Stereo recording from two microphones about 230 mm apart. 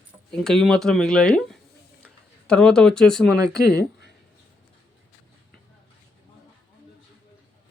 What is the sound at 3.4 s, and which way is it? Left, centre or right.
Speech, centre.